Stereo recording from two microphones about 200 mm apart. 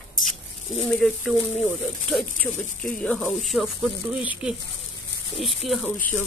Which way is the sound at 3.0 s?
Centre (ahead or behind).